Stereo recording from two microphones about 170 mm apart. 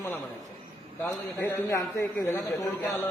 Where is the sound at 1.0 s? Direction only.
15° left (ahead or behind).